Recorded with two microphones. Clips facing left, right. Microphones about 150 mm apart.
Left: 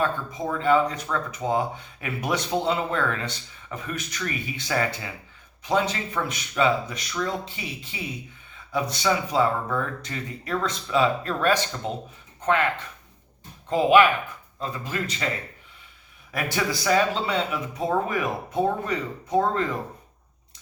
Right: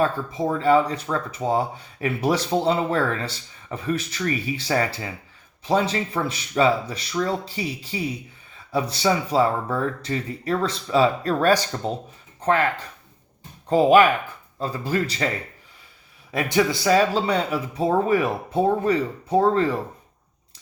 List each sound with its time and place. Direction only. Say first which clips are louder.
0.0 s speech: right 4 dB; 30° right (ahead or behind)
16.3 s a man's voice: right 6 dB; 20° right (ahead or behind)
17.2 s speech: right 3 dB; 35° right (ahead or behind)